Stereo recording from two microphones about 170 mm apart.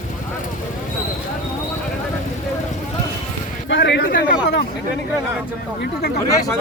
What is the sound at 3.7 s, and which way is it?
Speech, 85° left.